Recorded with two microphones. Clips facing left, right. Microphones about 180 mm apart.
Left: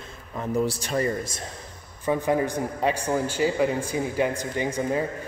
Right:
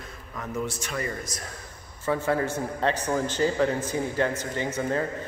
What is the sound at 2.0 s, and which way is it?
Speech, 15° left (ahead or behind).